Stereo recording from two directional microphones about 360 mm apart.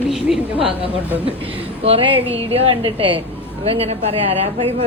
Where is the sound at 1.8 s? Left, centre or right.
Centre.